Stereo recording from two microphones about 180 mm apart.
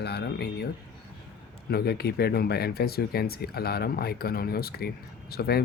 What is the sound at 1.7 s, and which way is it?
Speech, 60° left (ahead or behind).